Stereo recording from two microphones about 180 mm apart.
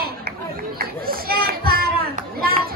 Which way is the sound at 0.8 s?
55° right (ahead or behind).